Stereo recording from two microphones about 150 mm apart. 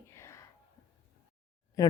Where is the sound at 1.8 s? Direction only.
20° left (ahead or behind).